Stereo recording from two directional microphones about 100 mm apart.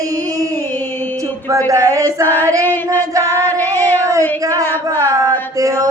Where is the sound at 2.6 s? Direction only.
20° left (ahead or behind).